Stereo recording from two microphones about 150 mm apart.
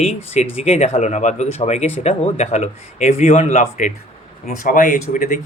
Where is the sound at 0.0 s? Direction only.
45° left (ahead or behind).